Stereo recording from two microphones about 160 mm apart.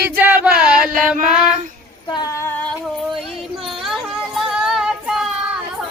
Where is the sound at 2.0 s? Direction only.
25° left (ahead or behind).